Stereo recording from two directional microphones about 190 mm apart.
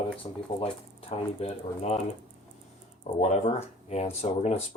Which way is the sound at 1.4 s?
35° left (ahead or behind).